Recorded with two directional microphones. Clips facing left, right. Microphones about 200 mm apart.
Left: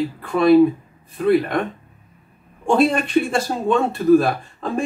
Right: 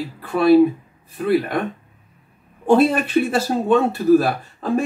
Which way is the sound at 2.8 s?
5° right (ahead or behind).